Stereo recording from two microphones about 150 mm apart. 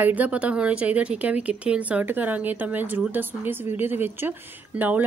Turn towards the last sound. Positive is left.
turn(degrees=-10)  # may be behind; listen again after turning